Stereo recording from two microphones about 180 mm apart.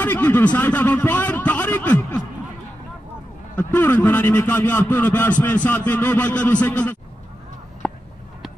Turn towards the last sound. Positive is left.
turn(degrees=5)  # may be behind; listen again after turning